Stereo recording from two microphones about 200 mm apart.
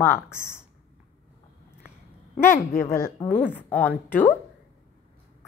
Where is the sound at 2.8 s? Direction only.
15° left (ahead or behind).